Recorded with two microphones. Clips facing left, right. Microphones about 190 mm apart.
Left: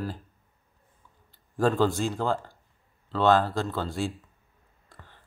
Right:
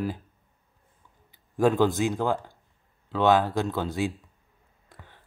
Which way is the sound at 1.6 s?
15° right (ahead or behind).